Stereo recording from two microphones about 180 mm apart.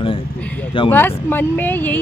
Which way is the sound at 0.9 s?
10° left (ahead or behind).